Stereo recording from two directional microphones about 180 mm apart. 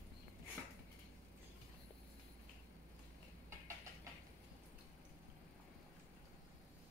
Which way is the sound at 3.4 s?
15° right (ahead or behind).